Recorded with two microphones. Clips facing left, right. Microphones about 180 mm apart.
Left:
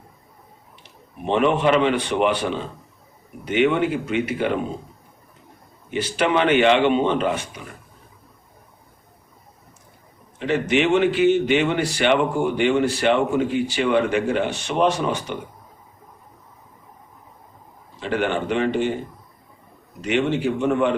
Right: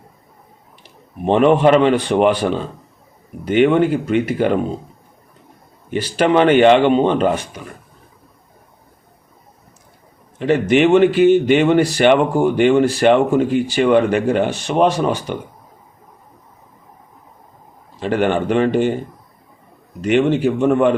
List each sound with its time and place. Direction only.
1.3 s speech: 45° right (ahead or behind)
3.4 s speech: 40° right (ahead or behind)
5.9 s speech: 45° right (ahead or behind)
10.5 s speech: 50° right (ahead or behind)
18.0 s speech: 45° right (ahead or behind)
20.1 s speech: 50° right (ahead or behind)